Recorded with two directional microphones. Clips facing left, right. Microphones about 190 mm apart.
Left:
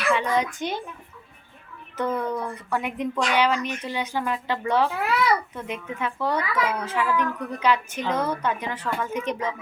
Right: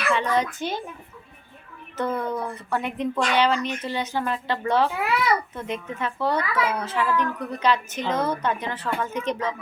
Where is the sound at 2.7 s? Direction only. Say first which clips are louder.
Right 1 dB; 10° left (ahead or behind).